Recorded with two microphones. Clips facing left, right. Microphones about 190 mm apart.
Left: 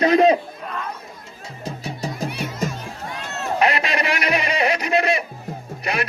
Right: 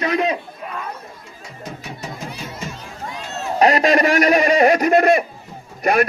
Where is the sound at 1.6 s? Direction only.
30° left (ahead or behind).